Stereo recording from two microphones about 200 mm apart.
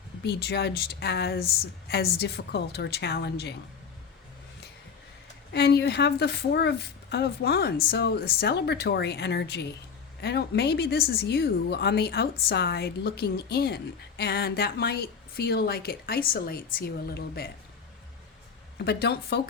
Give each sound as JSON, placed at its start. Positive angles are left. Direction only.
{"t": 0.2, "sound": "a woman's voice", "side_deg": 55}
{"t": 5.5, "sound": "a woman's voice", "side_deg": 55}
{"t": 18.9, "sound": "a woman's voice", "side_deg": 55}